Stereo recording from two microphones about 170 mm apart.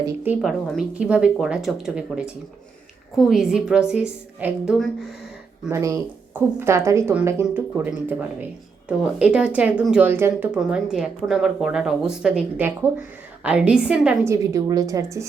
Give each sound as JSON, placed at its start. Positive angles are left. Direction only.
{"t": 0.2, "sound": "a woman's voice", "side_deg": -10}
{"t": 5.7, "sound": "a woman's voice", "side_deg": -15}
{"t": 14.3, "sound": "a woman's voice", "side_deg": -20}